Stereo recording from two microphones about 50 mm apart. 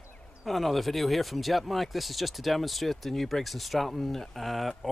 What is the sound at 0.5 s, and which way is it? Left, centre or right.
Speech, centre.